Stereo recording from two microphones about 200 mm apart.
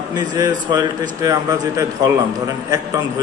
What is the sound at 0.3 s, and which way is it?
A man's voice, 20° right (ahead or behind).